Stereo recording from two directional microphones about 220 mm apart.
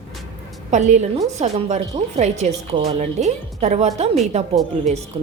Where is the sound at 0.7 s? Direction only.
35° right (ahead or behind).